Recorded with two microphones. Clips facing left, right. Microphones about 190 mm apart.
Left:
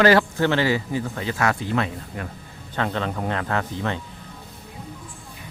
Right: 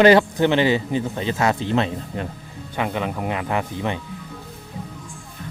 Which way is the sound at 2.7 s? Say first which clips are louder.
Right 1 dB; 10° right (ahead or behind).